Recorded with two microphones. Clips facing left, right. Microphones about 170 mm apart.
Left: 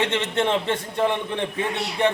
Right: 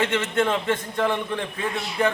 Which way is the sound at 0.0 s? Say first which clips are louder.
Even; 25° left (ahead or behind).